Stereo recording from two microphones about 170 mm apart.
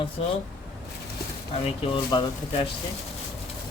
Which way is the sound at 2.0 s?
25° left (ahead or behind).